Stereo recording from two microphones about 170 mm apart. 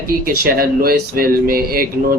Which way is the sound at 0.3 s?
60° right (ahead or behind).